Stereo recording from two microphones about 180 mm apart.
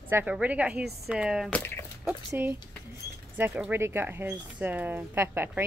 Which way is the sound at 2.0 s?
10° right (ahead or behind).